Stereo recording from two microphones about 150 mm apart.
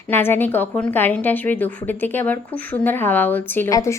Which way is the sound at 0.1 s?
15° left (ahead or behind).